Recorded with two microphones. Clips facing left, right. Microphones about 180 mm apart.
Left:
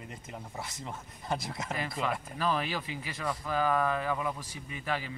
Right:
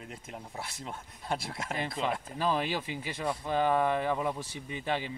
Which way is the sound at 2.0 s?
20° right (ahead or behind).